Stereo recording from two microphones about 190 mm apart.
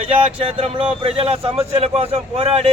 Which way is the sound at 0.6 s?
30° right (ahead or behind).